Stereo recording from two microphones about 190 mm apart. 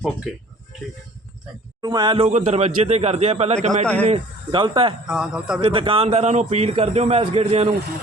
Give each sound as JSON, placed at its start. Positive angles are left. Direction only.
{"t": 1.8, "sound": "a man's voice", "side_deg": -20}
{"t": 5.0, "sound": "speech", "side_deg": -5}
{"t": 5.5, "sound": "a man's voice", "side_deg": -25}